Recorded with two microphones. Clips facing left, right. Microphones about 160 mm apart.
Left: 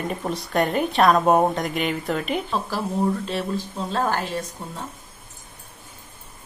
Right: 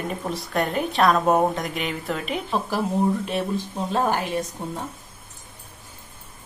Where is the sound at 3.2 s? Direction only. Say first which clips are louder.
Right 1 dB; 15° right (ahead or behind).